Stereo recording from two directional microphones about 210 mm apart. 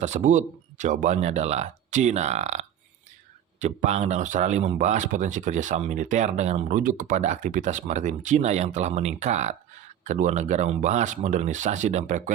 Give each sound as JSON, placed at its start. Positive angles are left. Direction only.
{"t": 0.0, "sound": "speech", "side_deg": -35}